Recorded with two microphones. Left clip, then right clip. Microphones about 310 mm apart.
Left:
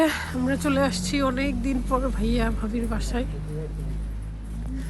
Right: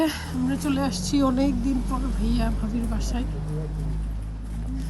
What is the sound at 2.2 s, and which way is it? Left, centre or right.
Speech, centre.